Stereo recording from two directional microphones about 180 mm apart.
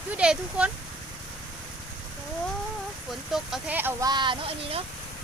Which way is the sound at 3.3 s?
5° right (ahead or behind).